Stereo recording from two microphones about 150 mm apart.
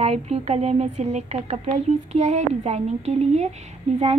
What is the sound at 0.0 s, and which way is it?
Speech, 45° right (ahead or behind).